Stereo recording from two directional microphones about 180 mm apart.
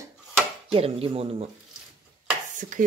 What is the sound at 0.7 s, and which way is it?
Speech, 30° right (ahead or behind).